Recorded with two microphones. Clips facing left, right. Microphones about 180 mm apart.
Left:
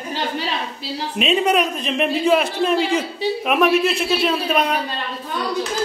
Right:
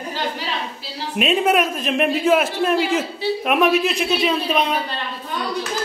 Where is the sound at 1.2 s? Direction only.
Centre (ahead or behind).